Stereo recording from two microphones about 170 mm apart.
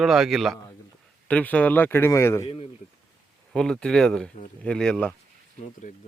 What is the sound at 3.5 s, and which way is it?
Speech, 5° left (ahead or behind).